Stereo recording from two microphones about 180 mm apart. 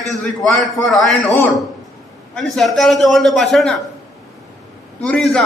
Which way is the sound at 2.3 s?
Centre (ahead or behind).